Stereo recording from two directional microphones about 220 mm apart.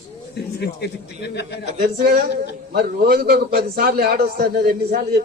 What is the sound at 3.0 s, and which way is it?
A man's voice, 45° right (ahead or behind).